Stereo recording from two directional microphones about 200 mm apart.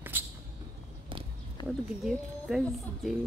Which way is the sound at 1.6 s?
25° left (ahead or behind).